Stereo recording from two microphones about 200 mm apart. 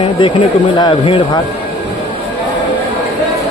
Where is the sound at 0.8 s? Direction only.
25° left (ahead or behind).